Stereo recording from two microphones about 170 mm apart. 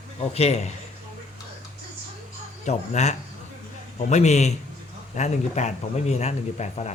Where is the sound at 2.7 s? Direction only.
40° left (ahead or behind).